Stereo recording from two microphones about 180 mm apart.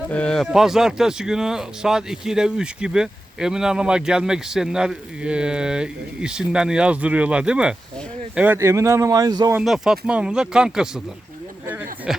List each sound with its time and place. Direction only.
0.1 s speech: 5° left (ahead or behind); by 9.6 s 20° right (ahead or behind)
9.6 s speech: 5° right (ahead or behind)
11.6 s a sound: 10° right (ahead or behind)